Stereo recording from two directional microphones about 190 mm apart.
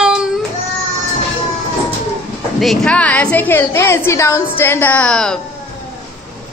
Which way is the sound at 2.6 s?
Centre (ahead or behind).